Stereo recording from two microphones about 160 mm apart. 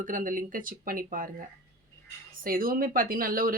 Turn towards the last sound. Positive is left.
turn(degrees=-60)  # may be behind; listen again after turning